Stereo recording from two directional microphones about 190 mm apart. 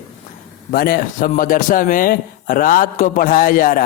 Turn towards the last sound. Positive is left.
turn(degrees=45)  # may be behind; listen again after turning